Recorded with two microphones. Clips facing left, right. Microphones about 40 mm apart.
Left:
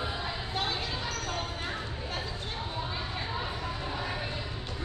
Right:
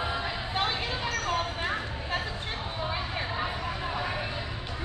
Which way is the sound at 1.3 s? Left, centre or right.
Right.